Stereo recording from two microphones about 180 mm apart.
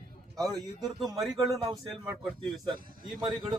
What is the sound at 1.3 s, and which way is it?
Speech, 20° right (ahead or behind).